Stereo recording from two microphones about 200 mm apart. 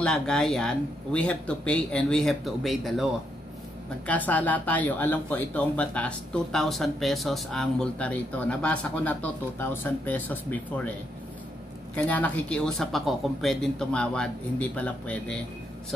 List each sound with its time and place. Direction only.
0.0 s speech: 5° left (ahead or behind)
11.9 s speech: 10° left (ahead or behind)